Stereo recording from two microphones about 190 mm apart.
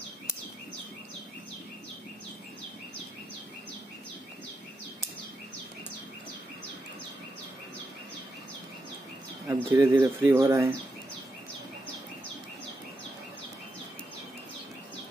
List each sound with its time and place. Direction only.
9.5 s speech: 15° right (ahead or behind)